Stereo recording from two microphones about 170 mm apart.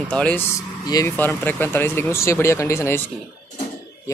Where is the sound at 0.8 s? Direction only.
20° left (ahead or behind).